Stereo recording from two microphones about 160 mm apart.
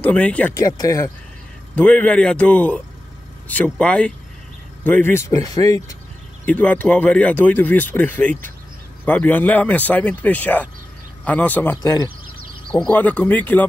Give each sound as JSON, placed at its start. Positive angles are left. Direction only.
{"t": 0.0, "sound": "speech", "side_deg": 10}
{"t": 0.6, "sound": "speech", "side_deg": 20}
{"t": 1.8, "sound": "speech", "side_deg": 10}
{"t": 6.4, "sound": "speech", "side_deg": 10}
{"t": 12.7, "sound": "speech", "side_deg": 10}